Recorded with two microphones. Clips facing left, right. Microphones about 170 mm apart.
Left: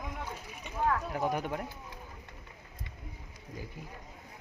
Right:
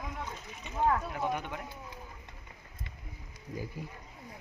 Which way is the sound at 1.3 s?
40° left (ahead or behind).